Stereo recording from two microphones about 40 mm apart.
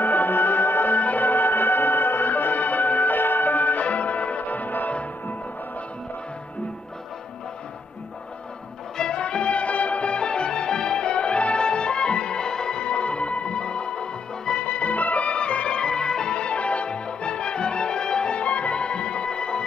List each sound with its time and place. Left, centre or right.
0.0 s music: left
8.9 s music: left
14.7 s music: left